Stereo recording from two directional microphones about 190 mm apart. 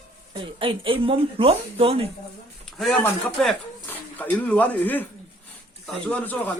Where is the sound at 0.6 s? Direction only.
30° right (ahead or behind).